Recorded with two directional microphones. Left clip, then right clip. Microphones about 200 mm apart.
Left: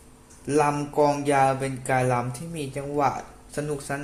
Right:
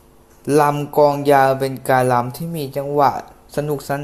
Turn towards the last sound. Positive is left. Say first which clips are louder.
# right 8 dB
turn(degrees=-25)  # may be behind; listen again after turning